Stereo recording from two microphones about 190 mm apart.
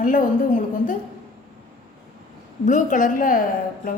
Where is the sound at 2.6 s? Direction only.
40° left (ahead or behind).